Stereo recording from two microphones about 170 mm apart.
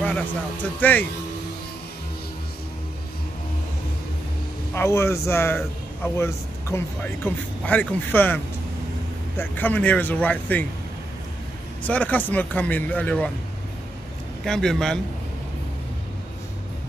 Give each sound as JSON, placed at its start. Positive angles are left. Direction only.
{"t": 0.0, "sound": "speech", "side_deg": 10}
{"t": 4.7, "sound": "speech", "side_deg": 15}
{"t": 9.4, "sound": "speech", "side_deg": 10}
{"t": 11.8, "sound": "speech", "side_deg": 10}
{"t": 14.4, "sound": "speech", "side_deg": 0}